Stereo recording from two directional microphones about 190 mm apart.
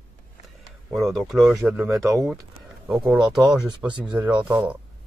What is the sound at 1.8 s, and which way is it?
Speech, 15° right (ahead or behind).